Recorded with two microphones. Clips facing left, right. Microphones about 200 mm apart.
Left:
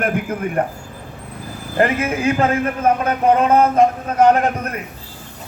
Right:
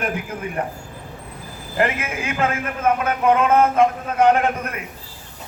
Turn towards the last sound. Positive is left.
turn(degrees=40)  # may be behind; listen again after turning